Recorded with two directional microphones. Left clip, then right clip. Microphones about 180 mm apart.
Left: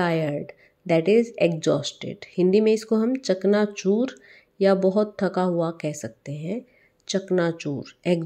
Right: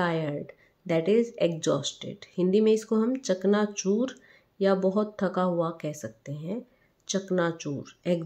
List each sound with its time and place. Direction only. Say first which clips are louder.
0.0 s a woman's voice: left 4 dB; 15° left (ahead or behind)